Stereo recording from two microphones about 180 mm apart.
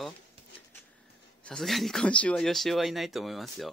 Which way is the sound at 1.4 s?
Centre (ahead or behind).